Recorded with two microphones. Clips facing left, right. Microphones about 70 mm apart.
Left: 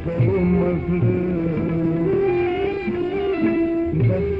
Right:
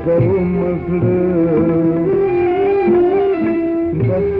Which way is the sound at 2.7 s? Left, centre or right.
Right.